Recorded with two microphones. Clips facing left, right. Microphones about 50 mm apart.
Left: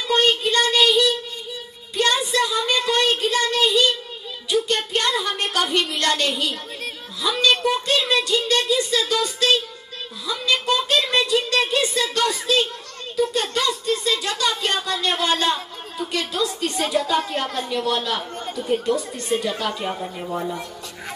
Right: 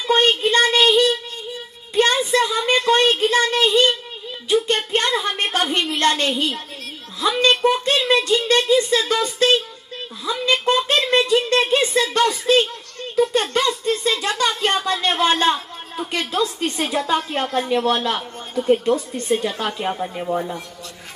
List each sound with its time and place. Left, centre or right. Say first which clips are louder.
0.0 s child singing: right 2 dB; right
0.4 s a woman's voice: right 3 dB; right
4.9 s a woman's voice: right 2 dB; right